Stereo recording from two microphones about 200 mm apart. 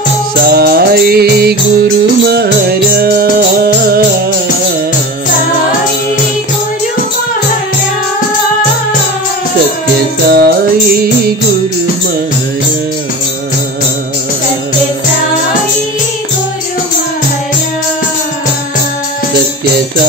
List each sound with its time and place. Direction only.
0.5 s music: 50° right (ahead or behind)
10.2 s music: 55° right (ahead or behind)